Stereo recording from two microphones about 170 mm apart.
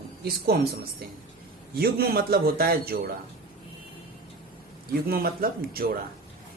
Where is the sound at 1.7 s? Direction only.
65° right (ahead or behind).